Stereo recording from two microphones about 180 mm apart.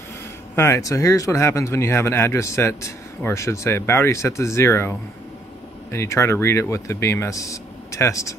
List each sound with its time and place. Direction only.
0.6 s speech: 15° left (ahead or behind)